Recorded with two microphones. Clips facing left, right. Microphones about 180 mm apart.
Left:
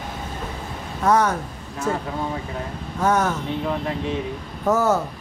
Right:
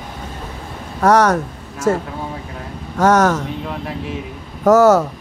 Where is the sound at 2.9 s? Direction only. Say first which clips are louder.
Right 7 dB; 85° right.